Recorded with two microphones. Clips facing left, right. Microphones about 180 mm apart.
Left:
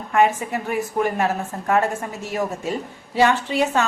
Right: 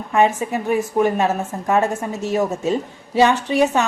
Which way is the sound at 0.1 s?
20° right (ahead or behind).